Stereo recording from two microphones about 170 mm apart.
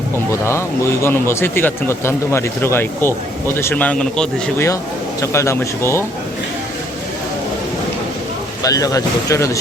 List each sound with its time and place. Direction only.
0.3 s speech: 15° left (ahead or behind)
5.2 s speech: 15° left (ahead or behind)
8.6 s speech: 20° left (ahead or behind)